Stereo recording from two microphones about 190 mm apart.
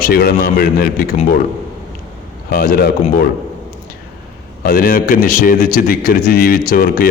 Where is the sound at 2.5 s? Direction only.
50° left (ahead or behind).